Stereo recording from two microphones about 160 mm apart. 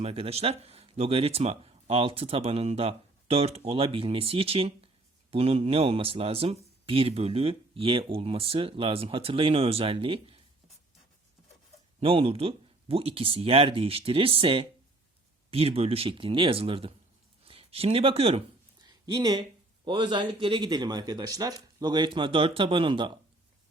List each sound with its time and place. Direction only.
0.0 s speech: 40° right (ahead or behind)
11.9 s speech: 35° right (ahead or behind)
18.8 s speech: 25° right (ahead or behind)